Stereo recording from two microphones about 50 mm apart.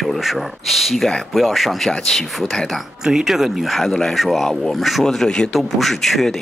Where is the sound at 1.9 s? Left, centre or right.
Centre.